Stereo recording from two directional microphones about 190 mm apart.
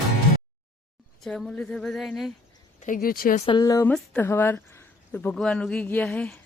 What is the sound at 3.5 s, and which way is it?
A woman's voice, 20° left (ahead or behind).